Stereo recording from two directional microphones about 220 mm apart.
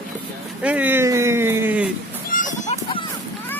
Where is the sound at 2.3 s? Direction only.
35° left (ahead or behind).